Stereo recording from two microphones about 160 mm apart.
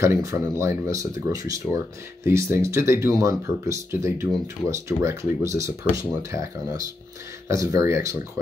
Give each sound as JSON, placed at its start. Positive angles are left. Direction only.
{"t": 0.0, "sound": "speech", "side_deg": -20}